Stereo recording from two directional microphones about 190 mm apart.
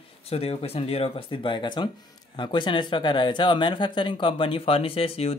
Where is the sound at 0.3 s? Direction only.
30° left (ahead or behind).